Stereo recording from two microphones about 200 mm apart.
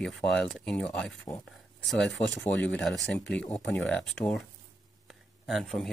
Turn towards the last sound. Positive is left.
turn(degrees=0)  # may be behind; listen again after turning